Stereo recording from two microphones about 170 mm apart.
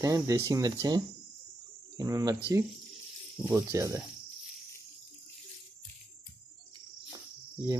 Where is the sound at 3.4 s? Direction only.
15° right (ahead or behind).